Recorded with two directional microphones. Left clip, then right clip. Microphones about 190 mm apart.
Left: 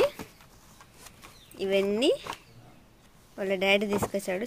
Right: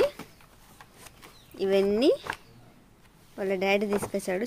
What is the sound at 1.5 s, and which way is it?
Speech, 15° right (ahead or behind).